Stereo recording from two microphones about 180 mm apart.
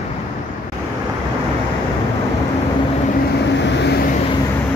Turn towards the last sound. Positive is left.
turn(degrees=75)  # may be behind; listen again after turning